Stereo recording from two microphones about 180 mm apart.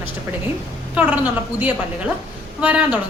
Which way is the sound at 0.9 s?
5° right (ahead or behind).